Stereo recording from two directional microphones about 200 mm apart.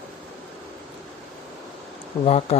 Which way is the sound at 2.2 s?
30° left (ahead or behind).